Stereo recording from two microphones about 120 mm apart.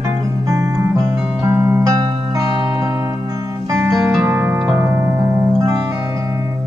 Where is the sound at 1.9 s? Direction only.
30° right (ahead or behind).